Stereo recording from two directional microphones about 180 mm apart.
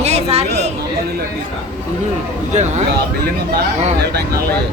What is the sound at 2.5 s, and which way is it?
Speech, 40° right (ahead or behind).